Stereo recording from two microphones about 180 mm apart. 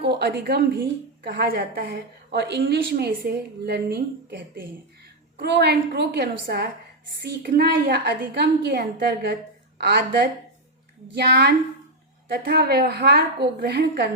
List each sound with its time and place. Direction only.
0.0 s a woman's voice: 70° right (ahead or behind)
5.4 s a woman's voice: 70° right (ahead or behind)